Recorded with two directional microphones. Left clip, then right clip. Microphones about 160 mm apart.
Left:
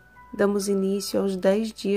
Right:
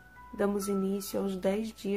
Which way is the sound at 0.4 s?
35° left (ahead or behind).